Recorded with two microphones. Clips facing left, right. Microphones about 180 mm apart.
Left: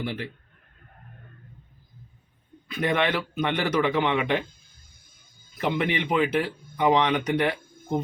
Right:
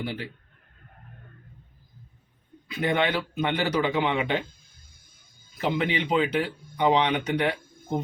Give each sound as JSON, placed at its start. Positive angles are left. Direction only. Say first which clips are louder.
{"t": 2.7, "sound": "speech", "louder": "even", "side_deg": -20}
{"t": 5.6, "sound": "speech", "louder": "even", "side_deg": -25}